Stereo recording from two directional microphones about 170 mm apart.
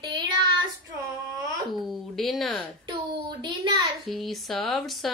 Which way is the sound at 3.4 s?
25° right (ahead or behind).